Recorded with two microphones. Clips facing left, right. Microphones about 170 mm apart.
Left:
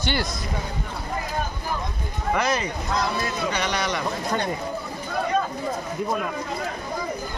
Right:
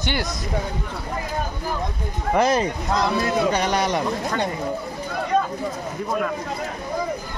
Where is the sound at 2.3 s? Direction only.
40° right (ahead or behind).